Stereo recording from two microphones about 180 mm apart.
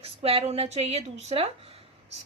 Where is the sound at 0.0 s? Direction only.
35° right (ahead or behind).